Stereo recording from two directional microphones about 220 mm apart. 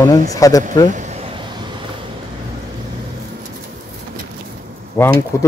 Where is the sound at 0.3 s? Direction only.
15° left (ahead or behind).